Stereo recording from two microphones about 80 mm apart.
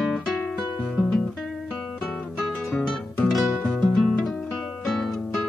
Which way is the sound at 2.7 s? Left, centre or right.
Centre.